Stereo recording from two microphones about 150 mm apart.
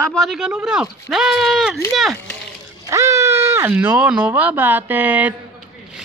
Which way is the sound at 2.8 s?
20° right (ahead or behind).